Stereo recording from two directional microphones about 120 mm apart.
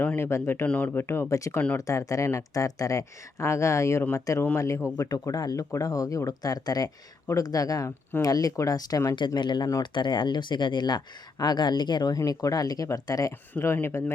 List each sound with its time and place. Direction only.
0.0 s speech: 15° left (ahead or behind)
13.5 s speech: 15° left (ahead or behind)